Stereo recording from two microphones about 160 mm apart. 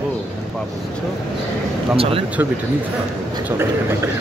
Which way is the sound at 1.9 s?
35° right (ahead or behind).